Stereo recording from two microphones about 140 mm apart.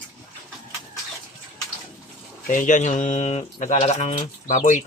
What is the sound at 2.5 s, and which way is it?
Speech, 70° left (ahead or behind).